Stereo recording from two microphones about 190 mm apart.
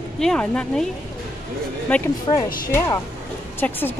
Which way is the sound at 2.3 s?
25° left (ahead or behind).